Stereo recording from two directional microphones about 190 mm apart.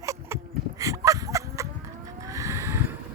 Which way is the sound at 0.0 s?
15° right (ahead or behind).